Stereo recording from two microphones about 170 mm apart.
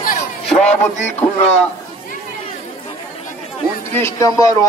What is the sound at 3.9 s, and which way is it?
Speech, 15° left (ahead or behind).